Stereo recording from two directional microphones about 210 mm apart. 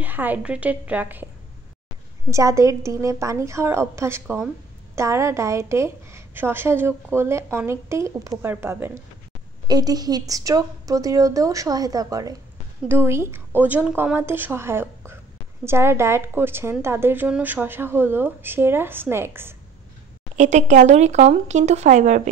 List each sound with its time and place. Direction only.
0.0 s a woman's voice: 10° right (ahead or behind)
2.3 s a woman's voice: 15° right (ahead or behind)
20.3 s speech: 35° right (ahead or behind)